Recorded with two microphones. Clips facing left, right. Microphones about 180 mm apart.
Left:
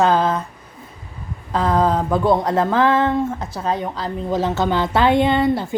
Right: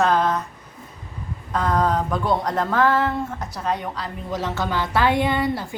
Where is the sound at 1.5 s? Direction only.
25° left (ahead or behind).